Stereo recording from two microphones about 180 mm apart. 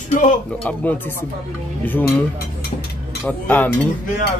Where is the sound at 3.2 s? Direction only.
10° left (ahead or behind).